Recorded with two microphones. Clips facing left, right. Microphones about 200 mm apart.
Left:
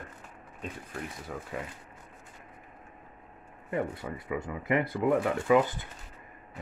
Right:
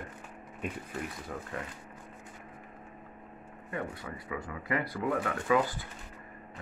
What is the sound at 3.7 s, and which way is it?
Speech, 25° left (ahead or behind).